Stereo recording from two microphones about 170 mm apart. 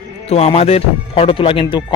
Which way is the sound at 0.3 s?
35° left (ahead or behind).